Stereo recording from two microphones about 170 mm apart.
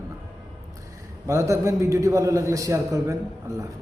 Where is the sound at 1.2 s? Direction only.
20° right (ahead or behind).